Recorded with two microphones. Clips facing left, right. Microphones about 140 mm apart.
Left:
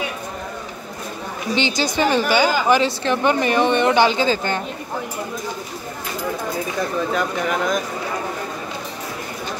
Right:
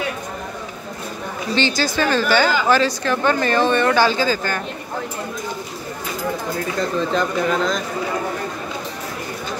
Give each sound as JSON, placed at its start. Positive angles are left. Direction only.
{"t": 1.5, "sound": "a woman's voice", "side_deg": 20}
{"t": 6.8, "sound": "speech", "side_deg": 10}